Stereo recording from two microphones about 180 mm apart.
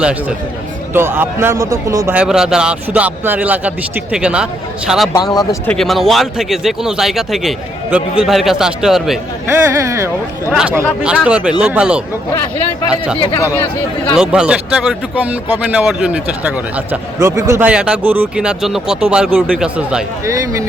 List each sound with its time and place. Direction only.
0.0 s a man's voice: 5° right (ahead or behind)
2.1 s speech: 5° right (ahead or behind)
5.1 s speech: 20° left (ahead or behind)
5.6 s speech: centre (ahead or behind)
9.5 s a man's voice: 15° right (ahead or behind)
10.5 s speech: 5° right (ahead or behind)
13.1 s speech: 30° left (ahead or behind)
14.2 s speech: 5° right (ahead or behind)
20.2 s a man's voice: 15° right (ahead or behind)